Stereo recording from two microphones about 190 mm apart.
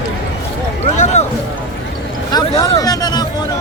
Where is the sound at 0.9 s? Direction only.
40° left (ahead or behind).